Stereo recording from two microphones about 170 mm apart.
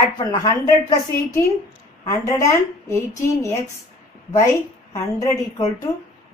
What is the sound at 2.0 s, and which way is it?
A woman's voice, 20° left (ahead or behind).